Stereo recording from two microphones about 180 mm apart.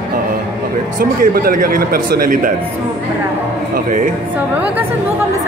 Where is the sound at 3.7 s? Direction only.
45° right (ahead or behind).